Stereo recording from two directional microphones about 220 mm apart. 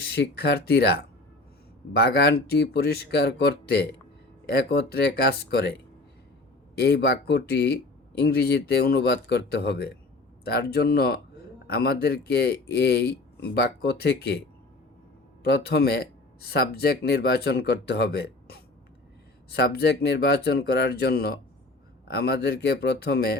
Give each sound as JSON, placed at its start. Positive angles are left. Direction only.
{"t": 0.0, "sound": "speech", "side_deg": 50}
{"t": 6.7, "sound": "speech", "side_deg": 45}
{"t": 15.4, "sound": "speech", "side_deg": 45}